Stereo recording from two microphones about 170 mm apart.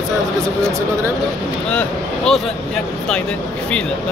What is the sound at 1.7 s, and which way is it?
Speech, 5° left (ahead or behind).